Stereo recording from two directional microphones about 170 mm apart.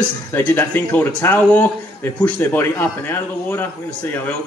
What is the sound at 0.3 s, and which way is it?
A man's voice, 10° left (ahead or behind).